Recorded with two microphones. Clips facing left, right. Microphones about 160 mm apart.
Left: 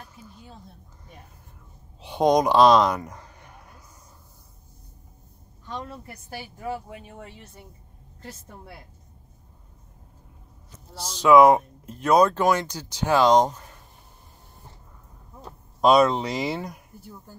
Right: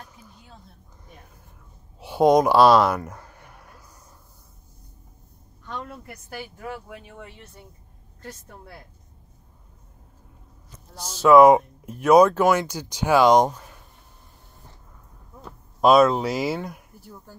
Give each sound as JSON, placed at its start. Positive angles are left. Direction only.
{"t": 2.0, "sound": "speech", "side_deg": -5}
{"t": 5.9, "sound": "a woman's voice", "side_deg": 30}
{"t": 11.1, "sound": "speech", "side_deg": -5}
{"t": 15.8, "sound": "speech", "side_deg": -5}